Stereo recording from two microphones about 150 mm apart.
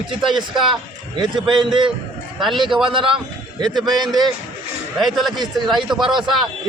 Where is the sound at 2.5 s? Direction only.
30° right (ahead or behind).